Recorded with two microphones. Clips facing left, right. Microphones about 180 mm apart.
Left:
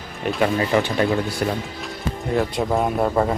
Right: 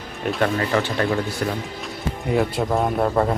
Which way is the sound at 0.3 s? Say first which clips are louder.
Left 1 dB; 5° left (ahead or behind).